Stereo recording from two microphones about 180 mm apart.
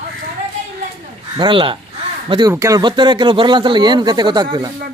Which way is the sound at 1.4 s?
30° right (ahead or behind).